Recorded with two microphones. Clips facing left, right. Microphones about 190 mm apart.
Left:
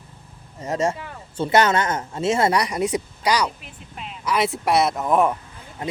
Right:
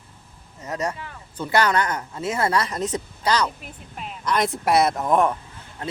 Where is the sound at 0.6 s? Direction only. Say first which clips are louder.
Left 5 dB; 25° left (ahead or behind); by 5.4 s 5° left (ahead or behind).